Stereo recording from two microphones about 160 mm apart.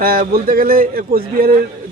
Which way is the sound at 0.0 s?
65° right (ahead or behind).